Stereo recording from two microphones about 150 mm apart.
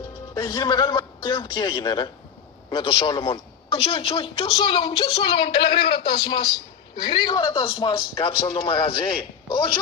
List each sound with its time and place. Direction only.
0.3 s speech: 30° left (ahead or behind)